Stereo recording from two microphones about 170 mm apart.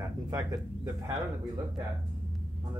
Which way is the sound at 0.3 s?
15° right (ahead or behind).